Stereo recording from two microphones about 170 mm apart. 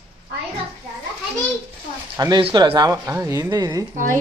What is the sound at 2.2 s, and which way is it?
A woman's voice, 30° right (ahead or behind).